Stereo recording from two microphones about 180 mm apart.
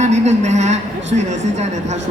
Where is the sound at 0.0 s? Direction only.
40° right (ahead or behind).